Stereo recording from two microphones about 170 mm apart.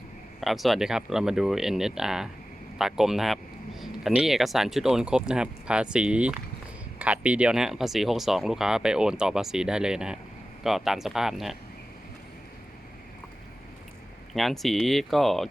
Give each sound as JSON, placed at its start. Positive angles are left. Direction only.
{"t": 0.3, "sound": "speech", "side_deg": 0}
{"t": 14.3, "sound": "speech", "side_deg": 0}